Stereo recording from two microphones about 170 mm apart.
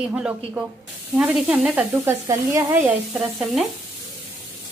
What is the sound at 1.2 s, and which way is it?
Speech, 5° right (ahead or behind).